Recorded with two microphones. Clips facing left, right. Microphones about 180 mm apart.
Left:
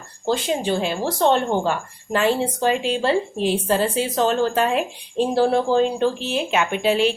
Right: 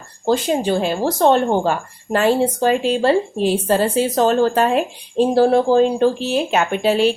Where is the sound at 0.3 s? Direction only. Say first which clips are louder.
Right 4 dB; 45° right (ahead or behind).